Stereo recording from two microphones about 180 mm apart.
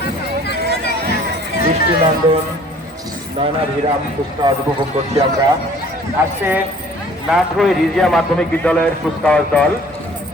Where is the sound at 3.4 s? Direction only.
30° right (ahead or behind).